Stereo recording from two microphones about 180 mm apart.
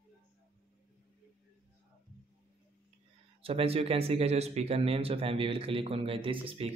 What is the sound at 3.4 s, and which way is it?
Speech, 30° right (ahead or behind).